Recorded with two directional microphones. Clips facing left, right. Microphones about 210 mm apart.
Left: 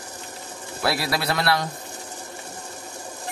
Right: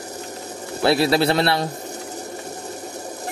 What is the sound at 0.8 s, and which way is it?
Speech, 25° right (ahead or behind).